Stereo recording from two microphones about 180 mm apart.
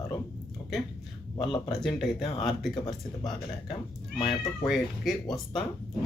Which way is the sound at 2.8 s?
30° left (ahead or behind).